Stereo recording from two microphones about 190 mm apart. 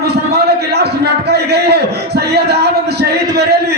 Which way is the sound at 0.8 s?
60° right (ahead or behind).